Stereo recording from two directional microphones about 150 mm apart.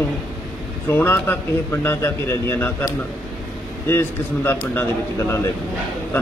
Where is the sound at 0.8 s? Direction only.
15° left (ahead or behind).